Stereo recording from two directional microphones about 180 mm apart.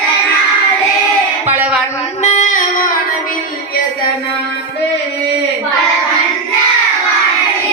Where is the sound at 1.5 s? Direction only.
10° right (ahead or behind).